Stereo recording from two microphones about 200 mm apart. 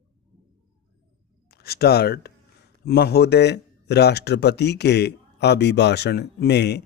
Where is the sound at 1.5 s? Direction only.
50° left (ahead or behind).